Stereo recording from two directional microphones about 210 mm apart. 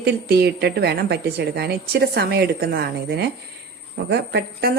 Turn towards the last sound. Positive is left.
turn(degrees=-50)  # may be behind; listen again after turning